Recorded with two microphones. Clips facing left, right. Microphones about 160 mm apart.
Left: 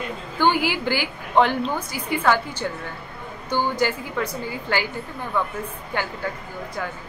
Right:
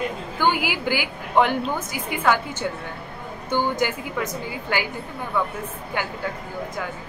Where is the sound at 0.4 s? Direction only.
10° right (ahead or behind).